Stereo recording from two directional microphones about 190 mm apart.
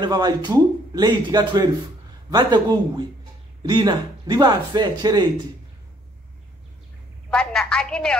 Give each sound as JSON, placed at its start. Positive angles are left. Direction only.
{"t": 0.0, "sound": "a man's voice", "side_deg": -25}
{"t": 7.2, "sound": "a woman's voice", "side_deg": 5}